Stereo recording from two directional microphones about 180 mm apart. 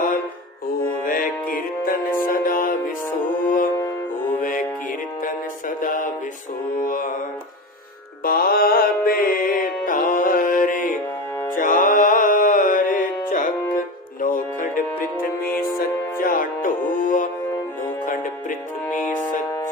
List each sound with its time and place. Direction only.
1.0 s music: 50° left (ahead or behind)
6.8 s mantra: 50° left (ahead or behind)
8.2 s music: 55° left (ahead or behind)